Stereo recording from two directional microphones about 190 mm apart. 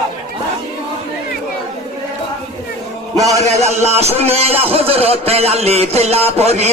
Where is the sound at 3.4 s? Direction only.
35° right (ahead or behind).